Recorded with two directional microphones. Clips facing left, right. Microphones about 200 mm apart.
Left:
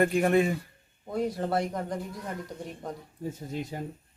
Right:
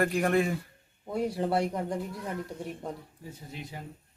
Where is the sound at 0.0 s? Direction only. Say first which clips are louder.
Left 3 dB; centre (ahead or behind).